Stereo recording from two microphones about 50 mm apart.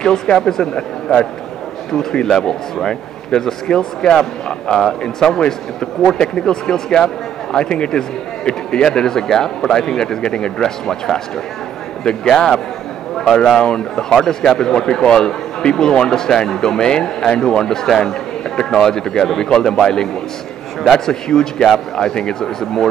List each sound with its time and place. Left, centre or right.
0.0 s a man's voice: centre
2.2 s a man's voice: centre
12.3 s a man's voice: centre